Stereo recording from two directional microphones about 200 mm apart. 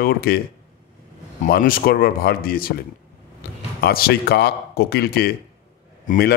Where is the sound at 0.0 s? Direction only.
50° left (ahead or behind).